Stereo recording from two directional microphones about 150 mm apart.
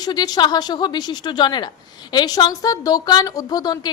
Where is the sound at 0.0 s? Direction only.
25° left (ahead or behind).